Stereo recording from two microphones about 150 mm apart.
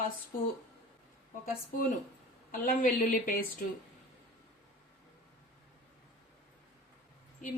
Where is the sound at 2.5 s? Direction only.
70° left (ahead or behind).